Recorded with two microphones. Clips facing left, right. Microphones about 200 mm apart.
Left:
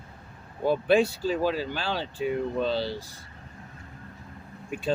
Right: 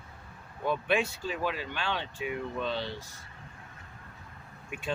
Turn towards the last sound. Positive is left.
turn(degrees=35)  # may be behind; listen again after turning